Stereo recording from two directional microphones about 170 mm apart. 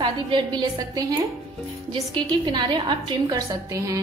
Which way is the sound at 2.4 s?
25° right (ahead or behind).